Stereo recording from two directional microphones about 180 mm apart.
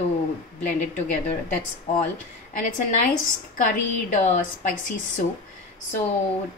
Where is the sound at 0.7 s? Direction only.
10° left (ahead or behind).